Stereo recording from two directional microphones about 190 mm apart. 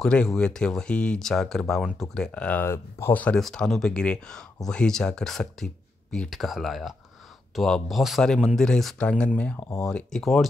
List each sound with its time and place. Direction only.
0.0 s speech: 5° left (ahead or behind)